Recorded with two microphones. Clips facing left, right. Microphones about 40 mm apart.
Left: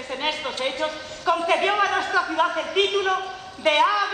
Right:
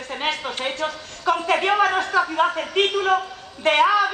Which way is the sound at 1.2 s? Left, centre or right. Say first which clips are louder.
Right 1 dB; centre.